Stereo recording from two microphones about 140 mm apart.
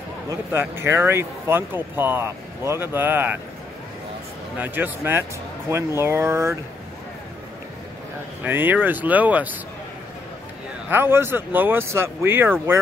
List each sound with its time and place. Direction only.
0.3 s speech: 15° right (ahead or behind)
4.6 s speech: 15° right (ahead or behind)
8.5 s speech: 15° right (ahead or behind)
10.9 s speech: 15° right (ahead or behind)